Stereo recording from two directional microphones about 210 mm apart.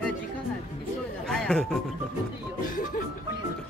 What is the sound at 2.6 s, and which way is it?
Music, 40° left (ahead or behind).